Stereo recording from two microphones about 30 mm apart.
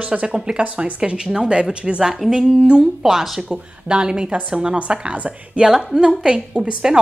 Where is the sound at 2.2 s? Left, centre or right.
Centre.